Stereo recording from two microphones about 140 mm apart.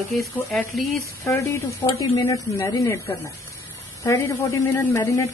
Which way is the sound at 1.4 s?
20° left (ahead or behind).